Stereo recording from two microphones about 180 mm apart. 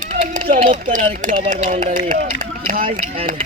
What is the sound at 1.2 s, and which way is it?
Speech, 45° right (ahead or behind).